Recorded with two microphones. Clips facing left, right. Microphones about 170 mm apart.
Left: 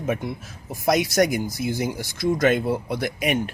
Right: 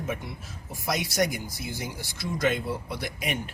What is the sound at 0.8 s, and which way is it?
Speech, 65° left (ahead or behind).